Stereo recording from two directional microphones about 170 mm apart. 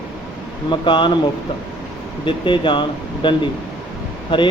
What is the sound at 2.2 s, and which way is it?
Speech, 30° left (ahead or behind).